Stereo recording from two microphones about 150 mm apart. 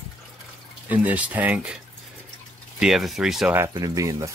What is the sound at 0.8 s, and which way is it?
Speech, 10° right (ahead or behind).